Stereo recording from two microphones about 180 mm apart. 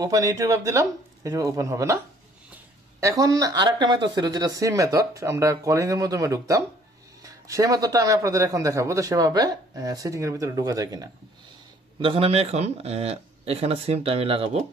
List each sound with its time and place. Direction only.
0.0 s speech: 20° right (ahead or behind)
12.0 s speech: 30° right (ahead or behind)